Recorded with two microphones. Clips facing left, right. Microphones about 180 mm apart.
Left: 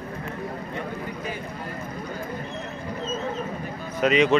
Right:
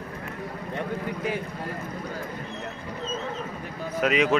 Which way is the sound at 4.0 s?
5° right (ahead or behind).